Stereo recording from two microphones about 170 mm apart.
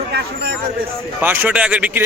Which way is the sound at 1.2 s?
10° right (ahead or behind).